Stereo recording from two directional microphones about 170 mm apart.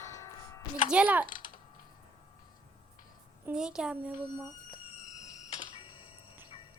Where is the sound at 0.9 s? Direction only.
10° right (ahead or behind).